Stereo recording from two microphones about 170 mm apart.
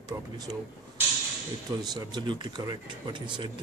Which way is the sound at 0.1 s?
15° right (ahead or behind).